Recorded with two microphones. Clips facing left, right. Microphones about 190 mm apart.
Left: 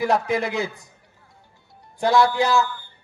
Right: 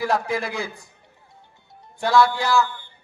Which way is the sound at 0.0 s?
20° left (ahead or behind).